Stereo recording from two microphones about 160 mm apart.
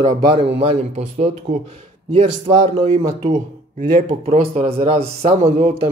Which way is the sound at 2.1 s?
35° right (ahead or behind).